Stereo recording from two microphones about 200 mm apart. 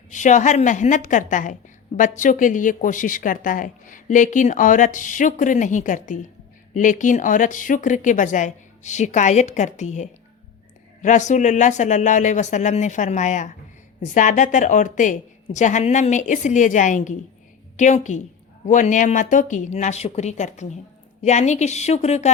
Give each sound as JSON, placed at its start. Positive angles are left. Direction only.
{"t": 0.1, "sound": "speech", "side_deg": 40}